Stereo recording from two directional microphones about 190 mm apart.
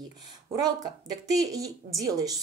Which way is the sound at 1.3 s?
20° right (ahead or behind).